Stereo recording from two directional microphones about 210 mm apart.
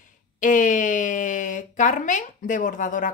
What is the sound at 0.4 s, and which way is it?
Speech, 40° left (ahead or behind).